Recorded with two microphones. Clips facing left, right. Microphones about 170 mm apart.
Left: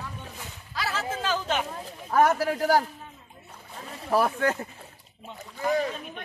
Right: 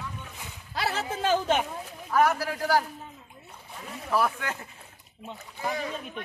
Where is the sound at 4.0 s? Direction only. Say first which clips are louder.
Left 3 dB; 30° left (ahead or behind).